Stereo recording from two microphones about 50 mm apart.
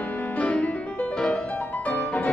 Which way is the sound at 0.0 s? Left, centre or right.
Left.